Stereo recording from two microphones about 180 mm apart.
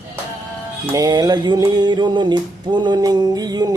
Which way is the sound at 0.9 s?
20° right (ahead or behind).